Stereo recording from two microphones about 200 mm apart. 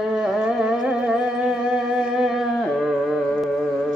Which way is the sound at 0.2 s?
Centre (ahead or behind).